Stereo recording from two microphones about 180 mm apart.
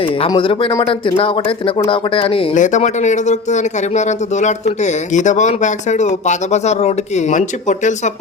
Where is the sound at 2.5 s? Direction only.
40° left (ahead or behind).